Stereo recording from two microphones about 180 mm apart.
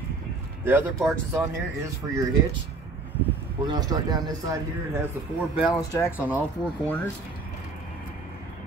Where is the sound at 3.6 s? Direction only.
20° right (ahead or behind).